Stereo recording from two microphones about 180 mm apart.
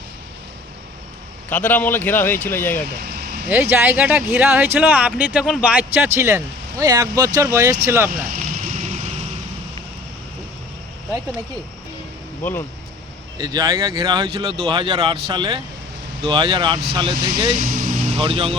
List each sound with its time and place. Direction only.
1.5 s speech: 10° left (ahead or behind)
3.0 s vehicle: 55° right (ahead or behind)
3.5 s speech: 10° right (ahead or behind)
8.3 s a sound: 45° right (ahead or behind)
12.4 s speech: 10° left (ahead or behind)
13.4 s speech: 20° right (ahead or behind)
17.6 s vehicle: 45° right (ahead or behind)
18.2 s speech: 30° right (ahead or behind)